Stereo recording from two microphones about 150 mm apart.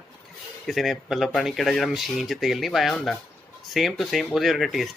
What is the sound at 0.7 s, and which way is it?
Speech, centre (ahead or behind).